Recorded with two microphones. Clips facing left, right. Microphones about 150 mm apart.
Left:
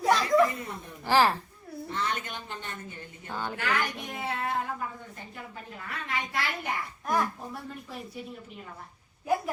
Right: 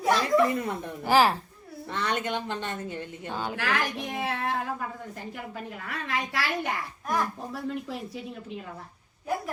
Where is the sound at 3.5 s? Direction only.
90° right.